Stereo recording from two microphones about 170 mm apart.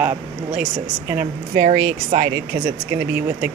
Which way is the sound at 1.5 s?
50° right (ahead or behind).